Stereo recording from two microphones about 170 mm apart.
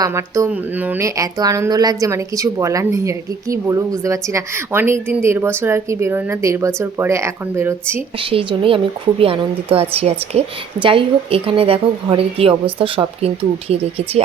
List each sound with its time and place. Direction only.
0.0 s a woman's voice: 20° right (ahead or behind)
8.2 s speech: 30° right (ahead or behind)